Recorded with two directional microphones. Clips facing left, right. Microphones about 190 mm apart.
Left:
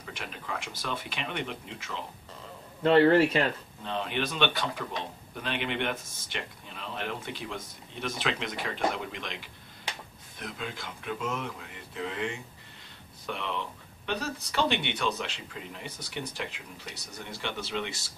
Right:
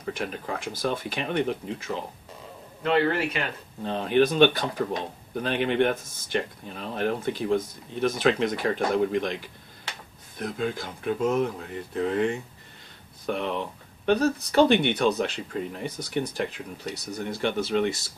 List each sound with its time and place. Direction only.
0.0 s speech: 45° right (ahead or behind)
2.8 s a man's voice: 30° left (ahead or behind)
3.8 s speech: 45° right (ahead or behind)